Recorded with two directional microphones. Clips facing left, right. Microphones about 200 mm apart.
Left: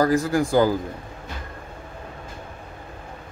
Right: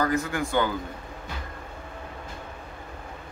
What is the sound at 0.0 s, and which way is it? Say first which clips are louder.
Speech: left 6 dB; 35° left (ahead or behind).